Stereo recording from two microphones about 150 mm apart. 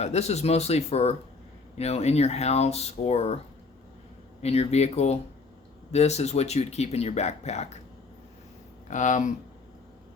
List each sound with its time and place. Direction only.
0.0 s speech: 45° left (ahead or behind)
4.4 s speech: 45° left (ahead or behind)
8.9 s speech: 55° left (ahead or behind)